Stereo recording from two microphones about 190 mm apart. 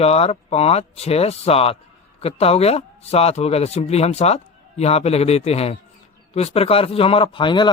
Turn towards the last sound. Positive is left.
turn(degrees=25)  # may be behind; listen again after turning